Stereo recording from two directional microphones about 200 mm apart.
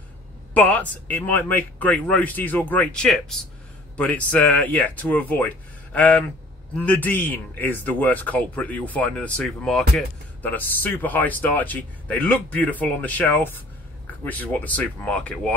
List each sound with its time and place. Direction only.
0.6 s a man's voice: 10° left (ahead or behind)